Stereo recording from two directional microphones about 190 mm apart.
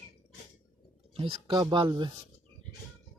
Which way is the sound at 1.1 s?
25° right (ahead or behind).